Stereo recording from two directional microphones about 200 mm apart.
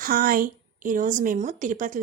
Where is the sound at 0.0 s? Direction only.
45° right (ahead or behind).